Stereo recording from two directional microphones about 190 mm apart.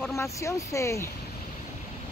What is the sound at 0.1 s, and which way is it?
Speech, 15° left (ahead or behind).